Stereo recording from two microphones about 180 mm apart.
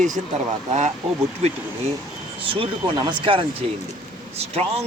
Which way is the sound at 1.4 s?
35° right (ahead or behind).